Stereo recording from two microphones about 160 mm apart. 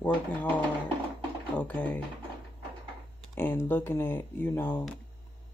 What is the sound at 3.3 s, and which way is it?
Speech, 10° left (ahead or behind).